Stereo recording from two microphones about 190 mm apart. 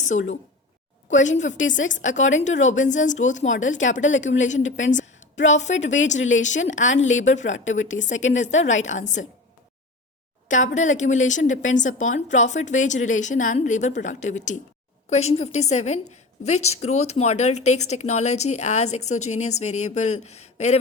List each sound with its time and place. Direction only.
0.0 s a woman's voice: 40° left (ahead or behind)
2.0 s speech: 90° left
2.4 s a woman's voice: 40° left (ahead or behind)
3.7 s a woman's voice: 85° left
4.4 s a woman's voice: 40° left (ahead or behind)
4.6 s a woman's voice: 80° left
8.3 s a woman's voice: 40° left (ahead or behind)
8.6 s a woman's voice: 85° left
9.0 s a woman's voice: 40° left (ahead or behind)
10.8 s a woman's voice: 40° left (ahead or behind)